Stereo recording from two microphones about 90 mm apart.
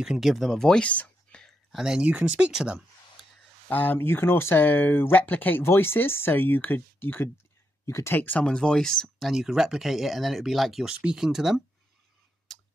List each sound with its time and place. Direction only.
0.0 s speech: 5° right (ahead or behind)
1.8 s speech: 10° right (ahead or behind)
3.6 s speech: 20° left (ahead or behind)
8.2 s speech: 15° left (ahead or behind); by 11.6 s 5° right (ahead or behind)